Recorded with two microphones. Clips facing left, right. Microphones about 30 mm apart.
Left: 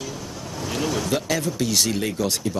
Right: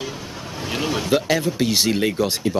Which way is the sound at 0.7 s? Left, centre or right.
Right.